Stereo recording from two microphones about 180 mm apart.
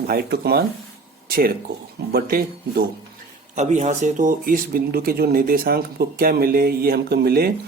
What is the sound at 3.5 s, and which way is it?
Speech, 40° right (ahead or behind).